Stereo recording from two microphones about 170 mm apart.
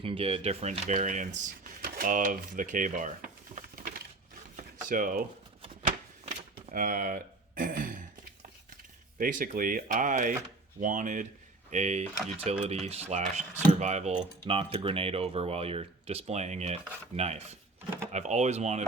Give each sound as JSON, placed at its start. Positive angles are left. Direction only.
{"t": 0.0, "sound": "speech", "side_deg": -35}
{"t": 6.2, "sound": "a sound", "side_deg": -50}
{"t": 9.1, "sound": "speech", "side_deg": -55}